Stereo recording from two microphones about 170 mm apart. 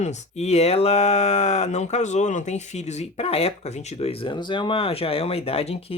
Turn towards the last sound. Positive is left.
turn(degrees=35)  # may be behind; listen again after turning